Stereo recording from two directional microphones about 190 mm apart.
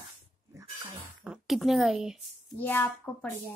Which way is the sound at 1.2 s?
5° right (ahead or behind).